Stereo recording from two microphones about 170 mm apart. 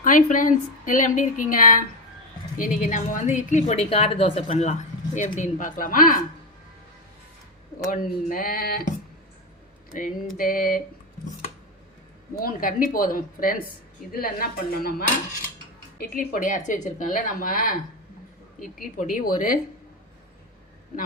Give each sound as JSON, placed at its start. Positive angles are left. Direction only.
{"t": 0.0, "sound": "a woman's voice", "side_deg": 50}
{"t": 7.9, "sound": "a woman's voice", "side_deg": 55}
{"t": 9.9, "sound": "a woman's voice", "side_deg": 55}
{"t": 12.4, "sound": "a woman's voice", "side_deg": 55}